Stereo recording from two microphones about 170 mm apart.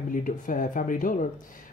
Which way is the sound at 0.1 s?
50° left (ahead or behind).